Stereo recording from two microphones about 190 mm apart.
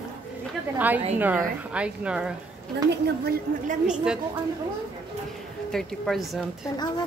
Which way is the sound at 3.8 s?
5° right (ahead or behind).